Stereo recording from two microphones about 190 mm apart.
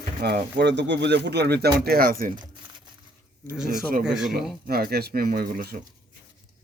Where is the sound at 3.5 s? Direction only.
5° right (ahead or behind).